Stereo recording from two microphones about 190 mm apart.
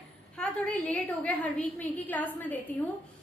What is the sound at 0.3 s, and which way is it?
A woman's voice, 5° left (ahead or behind).